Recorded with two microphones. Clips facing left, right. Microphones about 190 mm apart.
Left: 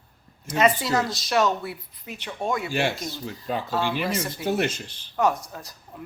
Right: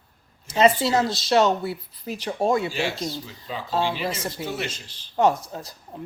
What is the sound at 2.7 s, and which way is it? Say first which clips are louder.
Speech: left 1 dB; 55° left (ahead or behind).